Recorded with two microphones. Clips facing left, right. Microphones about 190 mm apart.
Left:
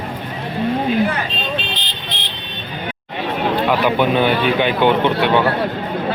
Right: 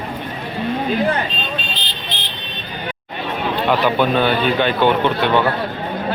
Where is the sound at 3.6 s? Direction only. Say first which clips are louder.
Right 1 dB; 10° left (ahead or behind).